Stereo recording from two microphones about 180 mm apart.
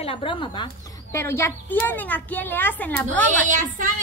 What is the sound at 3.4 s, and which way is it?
Speech, 45° right (ahead or behind).